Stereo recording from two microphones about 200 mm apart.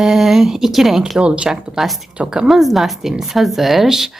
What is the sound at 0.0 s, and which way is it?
Speech, centre (ahead or behind).